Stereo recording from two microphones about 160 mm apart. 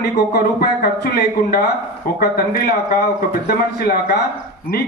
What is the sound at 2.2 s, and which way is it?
Speech, 80° left.